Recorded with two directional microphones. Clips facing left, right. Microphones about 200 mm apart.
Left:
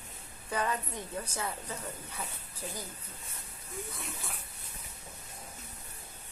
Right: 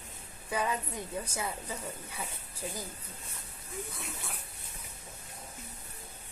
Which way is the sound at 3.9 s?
Centre (ahead or behind).